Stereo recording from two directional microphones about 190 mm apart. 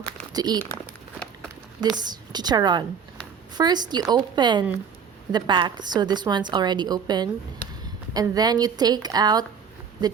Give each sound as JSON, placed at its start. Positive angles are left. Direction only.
{"t": 0.3, "sound": "a woman's voice", "side_deg": -20}
{"t": 2.0, "sound": "a woman's voice", "side_deg": -20}